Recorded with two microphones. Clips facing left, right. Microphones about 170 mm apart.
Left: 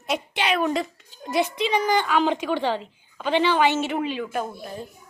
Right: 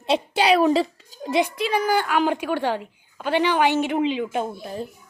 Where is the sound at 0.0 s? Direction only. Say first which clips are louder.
Right 6 dB; 30° right (ahead or behind).